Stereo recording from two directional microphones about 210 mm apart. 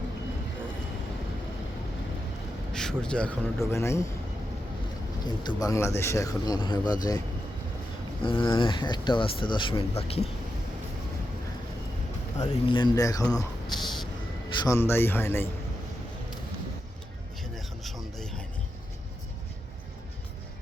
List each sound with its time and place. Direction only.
2.7 s speech: 5° left (ahead or behind)
5.2 s speech: 20° left (ahead or behind)
8.2 s speech: 25° left (ahead or behind)
12.4 s speech: 20° left (ahead or behind)
14.6 s speech: 15° left (ahead or behind)
17.5 s a sound: centre (ahead or behind)